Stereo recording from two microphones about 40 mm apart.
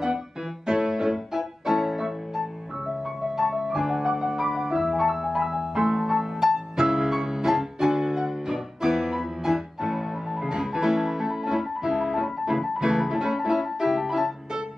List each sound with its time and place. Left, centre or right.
0.7 s music: centre
6.4 s music: centre